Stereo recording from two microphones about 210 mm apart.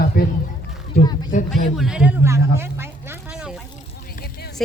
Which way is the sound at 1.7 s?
5° right (ahead or behind).